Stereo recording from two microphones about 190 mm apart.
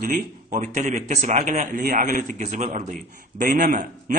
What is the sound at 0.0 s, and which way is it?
A man's voice, 45° right (ahead or behind).